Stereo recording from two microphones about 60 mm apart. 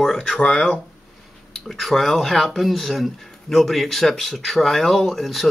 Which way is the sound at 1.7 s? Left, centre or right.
Centre.